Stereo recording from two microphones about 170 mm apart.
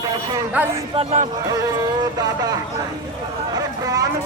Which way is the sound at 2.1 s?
20° right (ahead or behind).